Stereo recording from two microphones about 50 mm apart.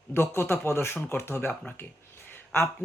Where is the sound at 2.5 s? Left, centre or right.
Left.